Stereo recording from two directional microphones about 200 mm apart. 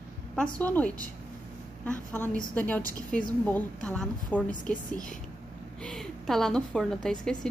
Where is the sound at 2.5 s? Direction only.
10° left (ahead or behind).